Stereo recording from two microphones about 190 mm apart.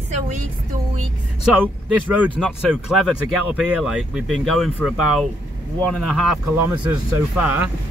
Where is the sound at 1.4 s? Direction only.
10° right (ahead or behind).